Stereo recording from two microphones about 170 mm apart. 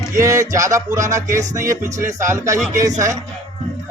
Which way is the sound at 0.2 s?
20° right (ahead or behind).